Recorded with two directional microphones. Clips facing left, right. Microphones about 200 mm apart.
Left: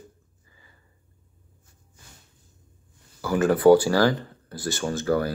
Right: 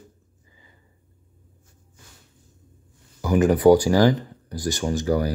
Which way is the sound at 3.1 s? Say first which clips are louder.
Right 3 dB; 15° right (ahead or behind).